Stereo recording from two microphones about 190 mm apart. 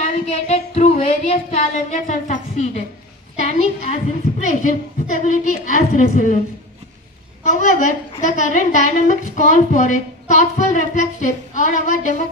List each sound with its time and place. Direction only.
0.0 s a woman's voice: 35° left (ahead or behind)
7.4 s a woman's voice: 40° left (ahead or behind)